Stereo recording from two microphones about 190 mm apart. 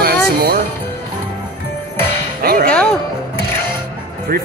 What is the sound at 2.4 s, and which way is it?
Music, 50° right (ahead or behind).